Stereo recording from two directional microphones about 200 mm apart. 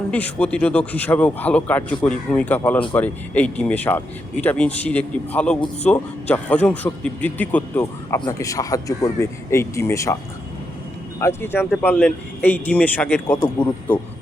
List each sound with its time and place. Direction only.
0.1 s speech: 5° left (ahead or behind)
11.2 s speech: 10° left (ahead or behind)